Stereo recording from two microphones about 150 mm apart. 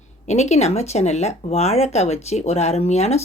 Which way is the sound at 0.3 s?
50° left (ahead or behind).